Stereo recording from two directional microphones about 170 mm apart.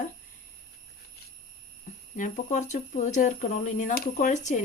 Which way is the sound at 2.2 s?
45° left (ahead or behind).